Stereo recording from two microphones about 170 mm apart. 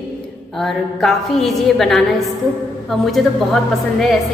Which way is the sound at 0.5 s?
Centre (ahead or behind).